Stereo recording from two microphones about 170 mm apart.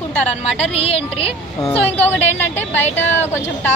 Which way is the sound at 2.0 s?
10° left (ahead or behind).